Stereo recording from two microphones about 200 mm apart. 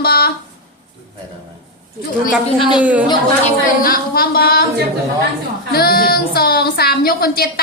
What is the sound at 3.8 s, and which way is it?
Speech, 45° left (ahead or behind).